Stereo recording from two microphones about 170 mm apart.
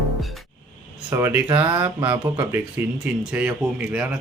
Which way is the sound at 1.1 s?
15° right (ahead or behind).